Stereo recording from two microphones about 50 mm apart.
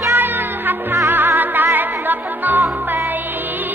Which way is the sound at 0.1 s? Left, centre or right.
Right.